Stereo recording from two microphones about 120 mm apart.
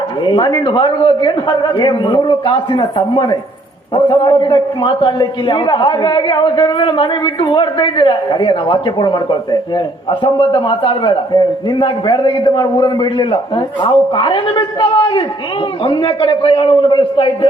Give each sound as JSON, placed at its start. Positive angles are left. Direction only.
{"t": 0.3, "sound": "a man's voice", "side_deg": 35}